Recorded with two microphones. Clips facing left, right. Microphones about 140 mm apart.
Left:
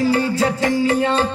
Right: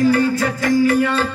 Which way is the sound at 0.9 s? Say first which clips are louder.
Even; 20° left (ahead or behind).